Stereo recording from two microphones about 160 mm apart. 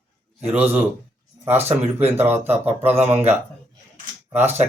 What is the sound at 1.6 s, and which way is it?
Speech, 40° right (ahead or behind).